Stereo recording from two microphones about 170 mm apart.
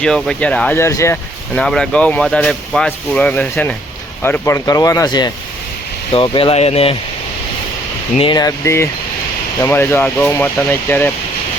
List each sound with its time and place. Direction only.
0.0 s speech: 5° left (ahead or behind); by 6.9 s 35° left (ahead or behind)
8.3 s speech: 20° left (ahead or behind)